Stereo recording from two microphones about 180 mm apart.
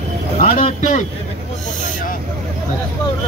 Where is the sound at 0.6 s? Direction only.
40° left (ahead or behind).